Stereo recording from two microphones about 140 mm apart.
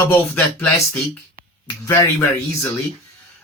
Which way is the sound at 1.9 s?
20° left (ahead or behind).